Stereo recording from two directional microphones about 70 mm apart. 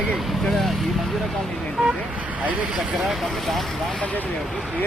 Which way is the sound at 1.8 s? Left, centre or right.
Centre.